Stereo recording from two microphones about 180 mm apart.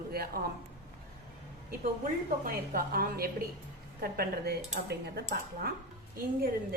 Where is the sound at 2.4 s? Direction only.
55° right (ahead or behind).